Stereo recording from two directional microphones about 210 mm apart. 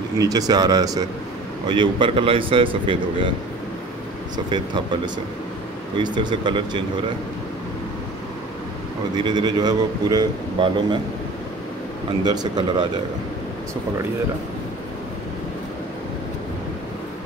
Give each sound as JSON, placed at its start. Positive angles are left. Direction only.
{"t": 0.2, "sound": "a man's voice", "side_deg": -15}
{"t": 4.5, "sound": "a man's voice", "side_deg": -20}
{"t": 9.1, "sound": "a man's voice", "side_deg": -20}
{"t": 12.3, "sound": "a man's voice", "side_deg": -20}